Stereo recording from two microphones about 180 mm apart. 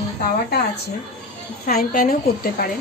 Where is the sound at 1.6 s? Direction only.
55° left (ahead or behind).